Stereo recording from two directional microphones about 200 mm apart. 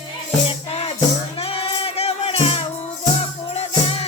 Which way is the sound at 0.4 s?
30° left (ahead or behind).